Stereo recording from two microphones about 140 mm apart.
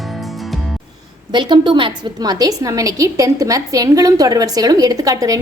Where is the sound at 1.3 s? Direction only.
35° right (ahead or behind).